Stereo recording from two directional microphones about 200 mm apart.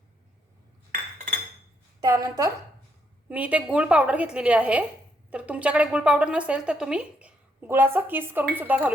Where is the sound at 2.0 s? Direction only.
15° right (ahead or behind).